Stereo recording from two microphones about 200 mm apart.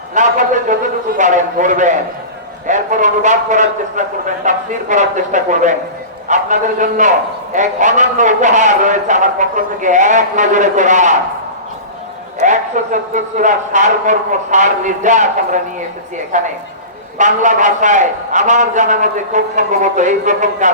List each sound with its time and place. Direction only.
0.1 s a man's voice: 40° right (ahead or behind)
12.4 s a man's voice: 40° right (ahead or behind)
16.3 s a man's voice: 35° right (ahead or behind)